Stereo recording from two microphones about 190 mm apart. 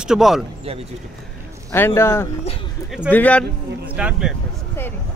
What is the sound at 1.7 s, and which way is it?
Speech, 15° left (ahead or behind).